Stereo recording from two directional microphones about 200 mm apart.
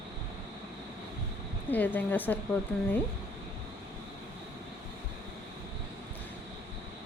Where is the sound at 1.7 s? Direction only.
10° left (ahead or behind).